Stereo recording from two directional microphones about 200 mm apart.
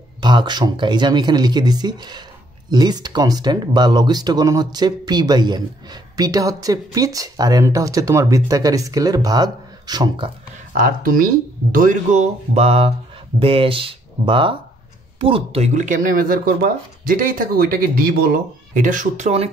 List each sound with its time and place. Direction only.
0.2 s speech: 20° right (ahead or behind)
10.7 s speech: 45° right (ahead or behind)